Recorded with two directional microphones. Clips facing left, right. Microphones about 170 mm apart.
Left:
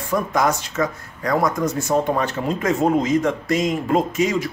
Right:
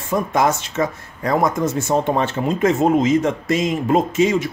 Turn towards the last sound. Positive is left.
turn(degrees=-25)  # may be behind; listen again after turning